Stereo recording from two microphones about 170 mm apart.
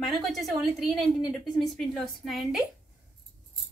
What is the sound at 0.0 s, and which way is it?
A woman's voice, centre (ahead or behind).